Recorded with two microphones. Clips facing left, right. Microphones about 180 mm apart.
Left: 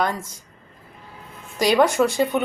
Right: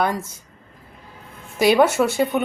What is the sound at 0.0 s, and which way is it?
Speech, 10° right (ahead or behind).